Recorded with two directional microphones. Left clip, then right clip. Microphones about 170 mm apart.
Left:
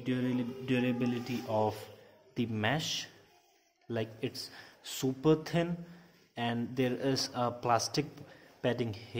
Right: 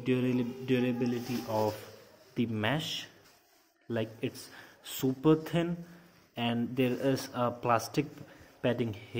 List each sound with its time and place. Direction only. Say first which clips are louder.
0.0 s a man's voice: right 4 dB; 15° right (ahead or behind)
0.7 s a man's voice: right 2 dB; 5° left (ahead or behind)
0.9 s speech: right 2 dB; 15° left (ahead or behind)
1.6 s a man's voice: right 1 dB; centre (ahead or behind)